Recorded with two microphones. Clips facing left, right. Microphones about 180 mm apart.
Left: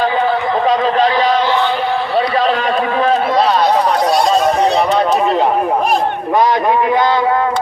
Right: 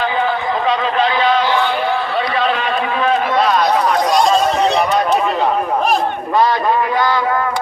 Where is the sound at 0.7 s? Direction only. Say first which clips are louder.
Left 3 dB; 40° left (ahead or behind).